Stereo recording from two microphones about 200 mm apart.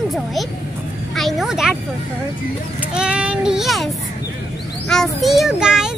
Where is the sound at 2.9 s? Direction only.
5° right (ahead or behind).